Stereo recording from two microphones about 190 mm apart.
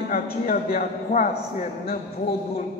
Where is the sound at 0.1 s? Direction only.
50° left (ahead or behind).